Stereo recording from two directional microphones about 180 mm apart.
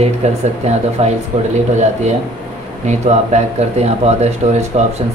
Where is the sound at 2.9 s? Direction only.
40° right (ahead or behind).